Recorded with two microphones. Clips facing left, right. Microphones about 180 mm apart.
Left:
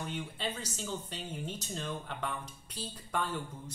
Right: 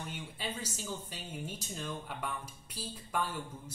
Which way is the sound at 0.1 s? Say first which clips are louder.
Left 3 dB; 10° right (ahead or behind).